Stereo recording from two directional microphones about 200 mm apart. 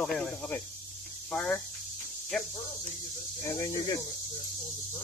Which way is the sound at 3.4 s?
15° left (ahead or behind).